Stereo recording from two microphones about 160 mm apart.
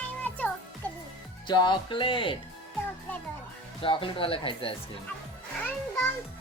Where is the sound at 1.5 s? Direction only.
30° left (ahead or behind).